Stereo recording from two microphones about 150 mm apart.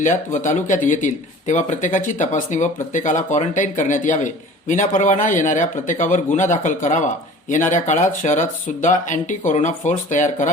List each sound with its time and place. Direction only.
0.0 s speech: 55° left (ahead or behind)